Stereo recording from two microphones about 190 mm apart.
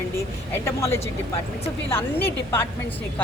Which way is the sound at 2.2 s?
10° left (ahead or behind).